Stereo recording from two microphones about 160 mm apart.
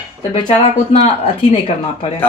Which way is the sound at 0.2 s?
30° left (ahead or behind).